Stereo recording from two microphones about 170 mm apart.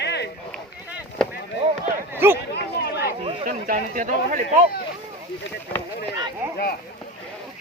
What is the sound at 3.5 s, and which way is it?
Speech, 55° right (ahead or behind).